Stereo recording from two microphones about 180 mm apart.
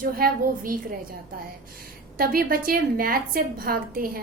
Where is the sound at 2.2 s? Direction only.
55° right (ahead or behind).